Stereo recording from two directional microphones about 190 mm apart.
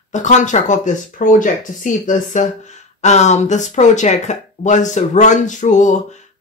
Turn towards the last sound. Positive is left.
turn(degrees=40)  # may be behind; listen again after turning